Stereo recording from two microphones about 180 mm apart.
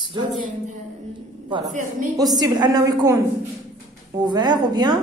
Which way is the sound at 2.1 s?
20° right (ahead or behind).